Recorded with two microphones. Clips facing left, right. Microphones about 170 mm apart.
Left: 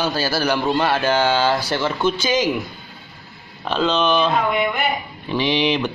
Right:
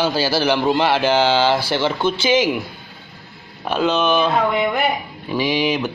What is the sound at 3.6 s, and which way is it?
Speech, 10° right (ahead or behind).